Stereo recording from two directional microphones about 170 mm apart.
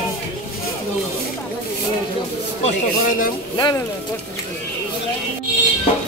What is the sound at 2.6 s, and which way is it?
Speech, 50° left (ahead or behind).